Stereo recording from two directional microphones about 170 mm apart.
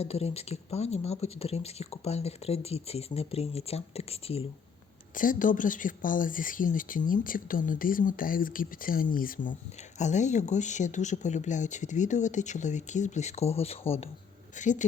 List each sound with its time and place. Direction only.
0.0 s speech: 35° left (ahead or behind)
5.1 s speech: 50° left (ahead or behind)